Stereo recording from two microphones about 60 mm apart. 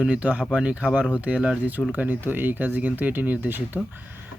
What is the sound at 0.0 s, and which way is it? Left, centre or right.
Speech, right.